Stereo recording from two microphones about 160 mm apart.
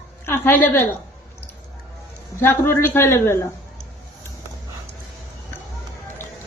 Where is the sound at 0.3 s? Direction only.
15° left (ahead or behind).